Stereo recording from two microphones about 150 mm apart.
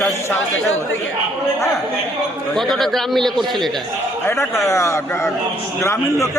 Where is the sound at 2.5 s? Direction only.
Centre (ahead or behind).